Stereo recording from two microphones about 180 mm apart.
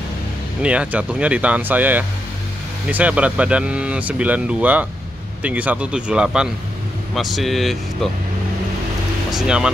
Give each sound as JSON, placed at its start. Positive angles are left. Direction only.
{"t": 0.6, "sound": "a man's voice", "side_deg": -5}
{"t": 9.3, "sound": "speech", "side_deg": -5}